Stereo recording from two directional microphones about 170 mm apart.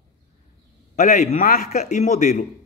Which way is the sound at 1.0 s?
45° left (ahead or behind).